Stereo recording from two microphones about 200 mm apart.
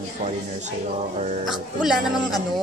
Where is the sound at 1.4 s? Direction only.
Centre (ahead or behind).